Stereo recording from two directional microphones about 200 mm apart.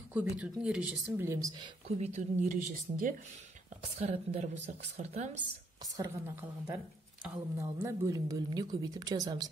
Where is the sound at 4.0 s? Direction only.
30° right (ahead or behind).